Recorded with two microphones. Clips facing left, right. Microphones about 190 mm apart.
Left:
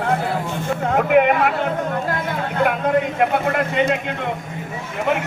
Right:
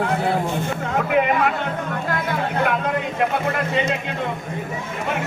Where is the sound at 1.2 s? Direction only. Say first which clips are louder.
Left 5 dB; 55° left (ahead or behind).